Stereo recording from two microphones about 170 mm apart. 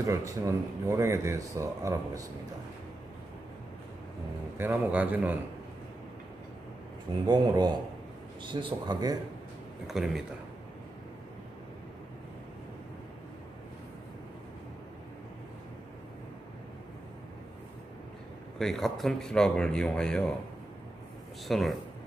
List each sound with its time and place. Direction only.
0.0 s speech: 20° right (ahead or behind)
4.6 s speech: 10° right (ahead or behind)
7.2 s speech: 25° right (ahead or behind)
9.8 s speech: centre (ahead or behind)
18.6 s speech: centre (ahead or behind)
21.5 s speech: centre (ahead or behind)